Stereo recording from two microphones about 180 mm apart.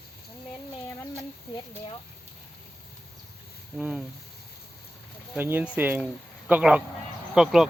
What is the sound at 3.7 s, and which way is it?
Speech, 5° right (ahead or behind).